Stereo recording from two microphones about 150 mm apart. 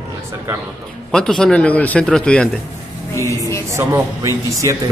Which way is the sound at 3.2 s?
20° left (ahead or behind).